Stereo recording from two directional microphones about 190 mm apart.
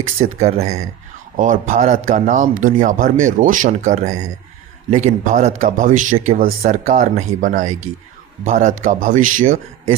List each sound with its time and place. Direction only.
0.2 s a man's voice: 35° right (ahead or behind)